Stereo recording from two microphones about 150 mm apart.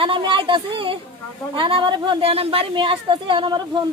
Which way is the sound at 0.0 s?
35° right (ahead or behind).